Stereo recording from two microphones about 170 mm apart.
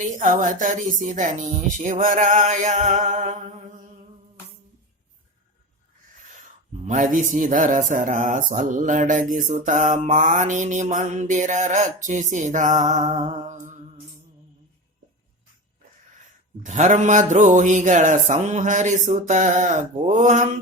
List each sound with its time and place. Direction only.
0.2 s speech: 45° right (ahead or behind)
6.8 s speech: 50° right (ahead or behind)
16.6 s speech: 45° right (ahead or behind)